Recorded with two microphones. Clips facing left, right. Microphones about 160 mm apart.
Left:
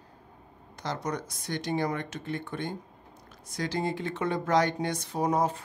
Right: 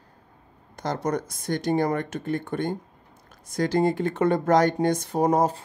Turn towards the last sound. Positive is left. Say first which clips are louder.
# right 5 dB
turn(degrees=-45)  # may be behind; listen again after turning